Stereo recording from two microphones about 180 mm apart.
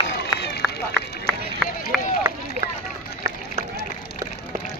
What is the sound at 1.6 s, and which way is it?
Run, centre (ahead or behind).